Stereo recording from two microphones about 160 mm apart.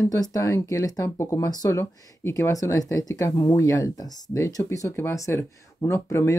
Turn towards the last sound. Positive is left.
turn(degrees=15)  # may be behind; listen again after turning